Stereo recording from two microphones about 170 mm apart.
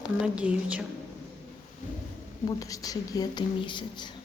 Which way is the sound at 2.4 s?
20° left (ahead or behind).